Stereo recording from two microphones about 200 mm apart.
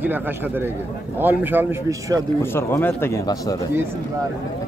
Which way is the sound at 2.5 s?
10° left (ahead or behind).